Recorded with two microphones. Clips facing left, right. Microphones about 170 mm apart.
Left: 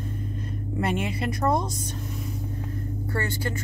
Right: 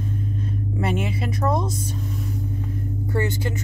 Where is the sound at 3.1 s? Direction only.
20° right (ahead or behind).